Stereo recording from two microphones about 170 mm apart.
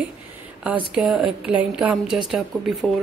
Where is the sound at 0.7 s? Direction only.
5° right (ahead or behind).